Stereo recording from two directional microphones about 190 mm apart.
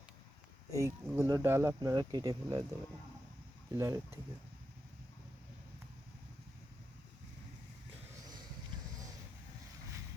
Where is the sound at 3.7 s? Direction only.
15° right (ahead or behind).